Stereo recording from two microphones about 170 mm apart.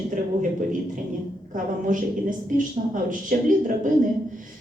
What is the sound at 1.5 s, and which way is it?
Speech, 50° right (ahead or behind).